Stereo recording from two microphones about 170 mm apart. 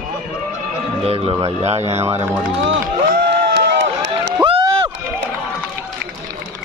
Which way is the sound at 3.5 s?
90° right.